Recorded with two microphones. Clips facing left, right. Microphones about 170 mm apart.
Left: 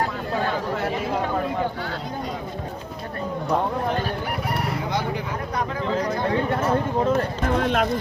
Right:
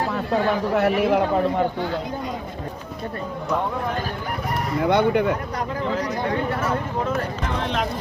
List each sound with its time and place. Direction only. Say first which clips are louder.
0.8 s speech: right 7 dB; 70° right (ahead or behind)
4.8 s speech: right 8 dB; 60° right (ahead or behind)
7.4 s speech: left 5 dB; 50° left (ahead or behind)